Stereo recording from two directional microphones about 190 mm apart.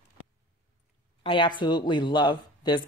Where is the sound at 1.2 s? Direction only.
25° left (ahead or behind).